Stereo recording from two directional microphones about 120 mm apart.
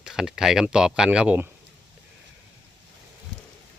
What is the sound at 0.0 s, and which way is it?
Speech, 5° right (ahead or behind).